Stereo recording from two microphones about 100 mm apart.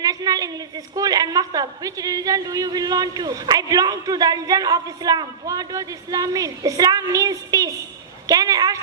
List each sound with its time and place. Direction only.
0.0 s a woman's voice: 40° right (ahead or behind)